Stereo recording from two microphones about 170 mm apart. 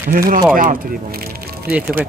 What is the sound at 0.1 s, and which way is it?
Speech, 55° right (ahead or behind).